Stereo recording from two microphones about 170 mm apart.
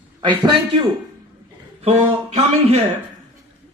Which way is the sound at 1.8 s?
35° right (ahead or behind).